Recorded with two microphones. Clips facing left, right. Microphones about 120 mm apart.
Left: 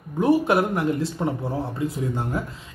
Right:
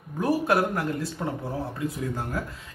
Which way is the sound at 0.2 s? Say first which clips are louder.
Left 4 dB; 20° left (ahead or behind).